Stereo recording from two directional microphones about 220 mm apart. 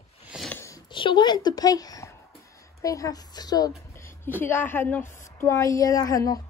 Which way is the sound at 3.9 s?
10° left (ahead or behind).